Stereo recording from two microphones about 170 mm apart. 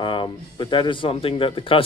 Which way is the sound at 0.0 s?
30° left (ahead or behind).